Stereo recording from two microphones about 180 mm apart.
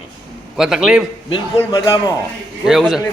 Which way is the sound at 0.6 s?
Centre (ahead or behind).